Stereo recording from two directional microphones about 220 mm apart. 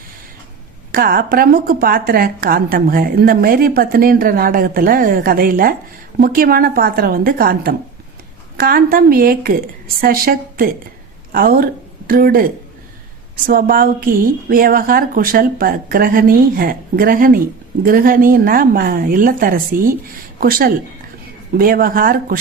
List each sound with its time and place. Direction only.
0.9 s a woman's voice: 40° right (ahead or behind)